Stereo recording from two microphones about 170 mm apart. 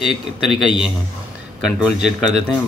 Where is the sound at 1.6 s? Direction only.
5° right (ahead or behind).